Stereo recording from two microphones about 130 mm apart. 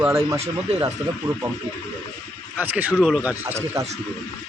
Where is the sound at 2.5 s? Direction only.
15° right (ahead or behind).